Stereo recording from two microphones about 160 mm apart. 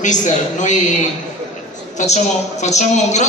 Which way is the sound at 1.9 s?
45° left (ahead or behind).